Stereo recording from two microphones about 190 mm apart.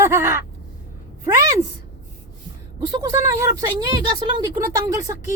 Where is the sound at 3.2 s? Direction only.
15° right (ahead or behind).